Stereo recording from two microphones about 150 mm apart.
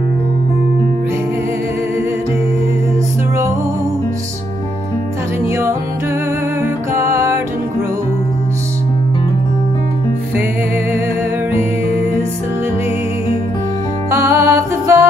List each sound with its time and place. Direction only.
6.6 s music: 20° right (ahead or behind)
14.1 s music: 15° right (ahead or behind)